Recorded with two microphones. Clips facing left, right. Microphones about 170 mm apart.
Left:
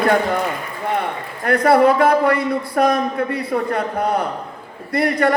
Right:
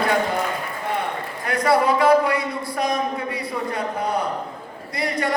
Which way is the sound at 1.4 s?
55° left (ahead or behind).